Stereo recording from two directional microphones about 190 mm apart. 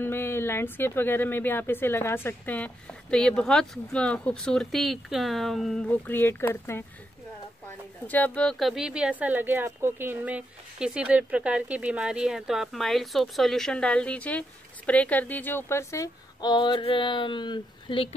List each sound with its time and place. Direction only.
0.0 s speech: 10° left (ahead or behind)
8.1 s a woman's voice: 5° left (ahead or behind); by 18.1 s 25° left (ahead or behind)